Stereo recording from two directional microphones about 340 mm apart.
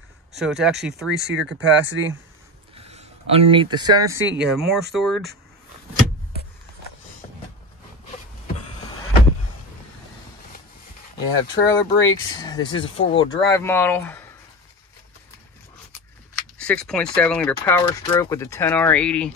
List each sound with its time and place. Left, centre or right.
0.4 s speech: centre
1.1 s speech: right
2.7 s speech: centre
4.5 s speech: centre
11.3 s speech: centre
16.5 s speech: centre